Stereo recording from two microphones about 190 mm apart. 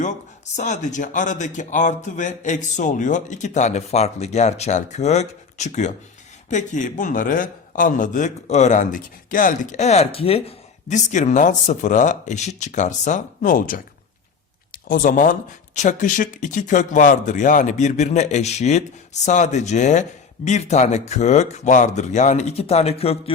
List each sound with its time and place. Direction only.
0.0 s a man's voice: 40° left (ahead or behind)